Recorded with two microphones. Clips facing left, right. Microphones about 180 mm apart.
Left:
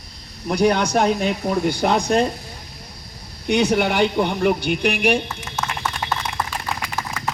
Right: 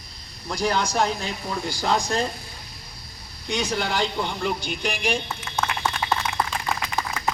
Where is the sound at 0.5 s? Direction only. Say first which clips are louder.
Left 6 dB; 60° left (ahead or behind).